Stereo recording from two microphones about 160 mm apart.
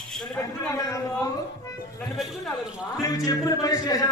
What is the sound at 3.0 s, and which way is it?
Music, 25° left (ahead or behind).